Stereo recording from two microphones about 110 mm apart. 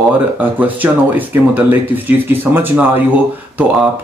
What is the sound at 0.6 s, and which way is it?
Speech, 15° right (ahead or behind).